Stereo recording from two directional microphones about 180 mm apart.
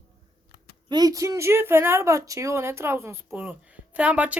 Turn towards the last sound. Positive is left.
turn(degrees=-10)  # may be behind; listen again after turning